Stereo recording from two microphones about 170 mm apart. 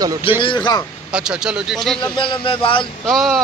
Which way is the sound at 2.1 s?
30° left (ahead or behind).